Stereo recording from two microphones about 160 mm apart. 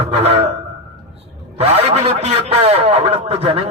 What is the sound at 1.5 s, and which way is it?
A man's voice, 45° right (ahead or behind).